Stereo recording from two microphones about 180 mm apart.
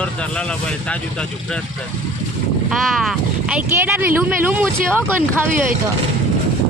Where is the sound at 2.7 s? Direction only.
Centre (ahead or behind).